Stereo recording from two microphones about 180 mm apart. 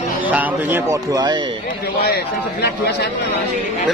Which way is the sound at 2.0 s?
65° left (ahead or behind).